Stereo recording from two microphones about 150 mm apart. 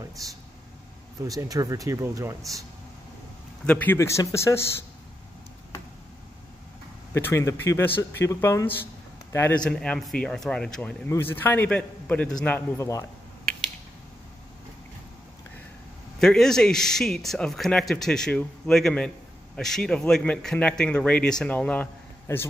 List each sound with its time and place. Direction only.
1.2 s speech: 25° right (ahead or behind)
3.6 s a man's voice: 10° left (ahead or behind)
7.2 s a man's voice: 15° left (ahead or behind)
16.2 s a man's voice: 5° left (ahead or behind)